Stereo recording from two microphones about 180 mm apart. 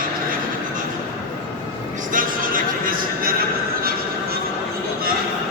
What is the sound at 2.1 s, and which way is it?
Music, 50° right (ahead or behind).